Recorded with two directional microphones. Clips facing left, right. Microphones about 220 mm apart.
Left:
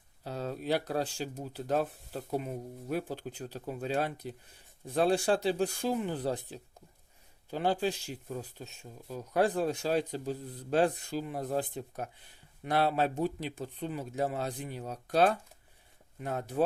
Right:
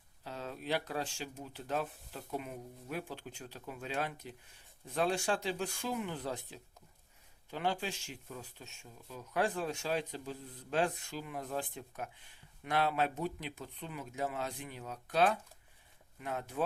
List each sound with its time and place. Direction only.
0.3 s speech: 40° left (ahead or behind)